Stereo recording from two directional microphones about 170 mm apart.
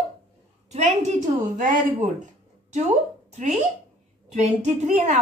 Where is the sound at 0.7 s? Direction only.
40° right (ahead or behind).